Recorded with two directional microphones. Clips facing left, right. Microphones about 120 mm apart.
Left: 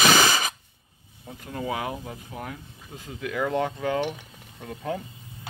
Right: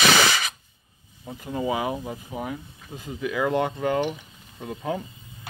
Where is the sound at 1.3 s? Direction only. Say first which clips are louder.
Right 4 dB; 5° right (ahead or behind).